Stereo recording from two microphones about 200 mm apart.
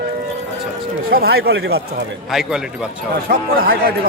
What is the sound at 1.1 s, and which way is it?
Speech, 50° right (ahead or behind).